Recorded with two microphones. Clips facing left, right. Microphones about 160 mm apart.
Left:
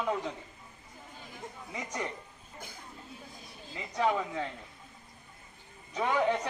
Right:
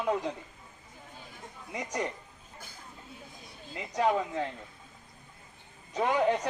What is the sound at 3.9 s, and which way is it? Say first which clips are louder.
Speech: right 2 dB; 15° right (ahead or behind).